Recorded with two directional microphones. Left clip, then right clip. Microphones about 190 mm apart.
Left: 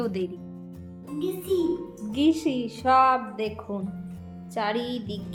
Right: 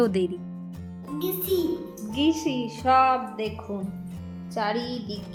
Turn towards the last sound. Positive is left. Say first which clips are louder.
# even
turn(degrees=0)  # may be behind; listen again after turning